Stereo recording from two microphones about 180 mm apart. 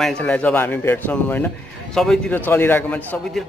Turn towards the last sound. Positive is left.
turn(degrees=10)  # may be behind; listen again after turning